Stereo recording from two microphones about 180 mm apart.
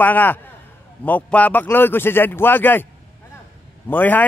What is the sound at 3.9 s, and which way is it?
Speech, 10° left (ahead or behind).